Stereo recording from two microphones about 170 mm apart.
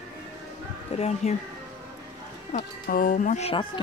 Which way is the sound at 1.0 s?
40° left (ahead or behind).